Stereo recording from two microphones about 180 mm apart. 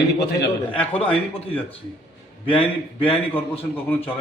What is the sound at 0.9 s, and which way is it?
Speech, 30° left (ahead or behind).